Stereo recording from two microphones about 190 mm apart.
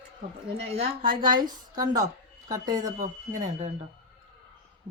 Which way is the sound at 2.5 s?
20° right (ahead or behind).